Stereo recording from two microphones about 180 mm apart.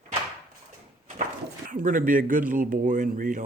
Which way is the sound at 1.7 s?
45° right (ahead or behind).